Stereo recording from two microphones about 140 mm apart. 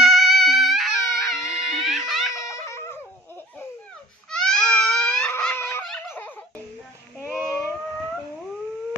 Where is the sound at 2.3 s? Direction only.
25° left (ahead or behind).